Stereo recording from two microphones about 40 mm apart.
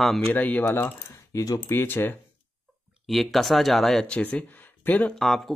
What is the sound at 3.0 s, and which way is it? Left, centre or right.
Speech, centre.